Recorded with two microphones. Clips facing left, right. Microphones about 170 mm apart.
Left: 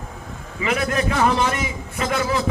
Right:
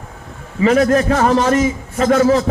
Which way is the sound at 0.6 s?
35° right (ahead or behind).